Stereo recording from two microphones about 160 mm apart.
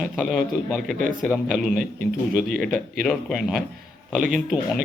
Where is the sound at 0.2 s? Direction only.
Centre (ahead or behind).